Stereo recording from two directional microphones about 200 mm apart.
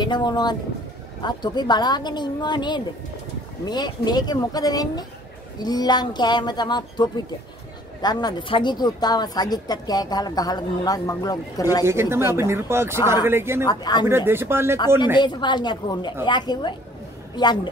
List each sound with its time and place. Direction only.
0.0 s a woman's voice: 20° left (ahead or behind)
11.8 s speech: 10° right (ahead or behind)
13.7 s a woman's voice: 20° left (ahead or behind)
14.0 s speech: 10° right (ahead or behind)
15.1 s a woman's voice: 20° left (ahead or behind)